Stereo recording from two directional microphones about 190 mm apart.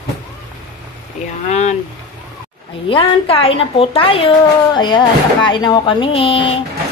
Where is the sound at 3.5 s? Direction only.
30° left (ahead or behind).